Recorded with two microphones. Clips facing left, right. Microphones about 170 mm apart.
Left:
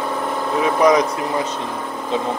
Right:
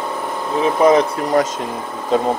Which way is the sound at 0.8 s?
30° right (ahead or behind).